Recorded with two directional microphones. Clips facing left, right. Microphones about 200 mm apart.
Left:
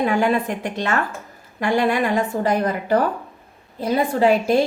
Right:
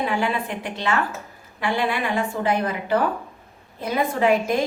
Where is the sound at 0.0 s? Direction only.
45° left (ahead or behind).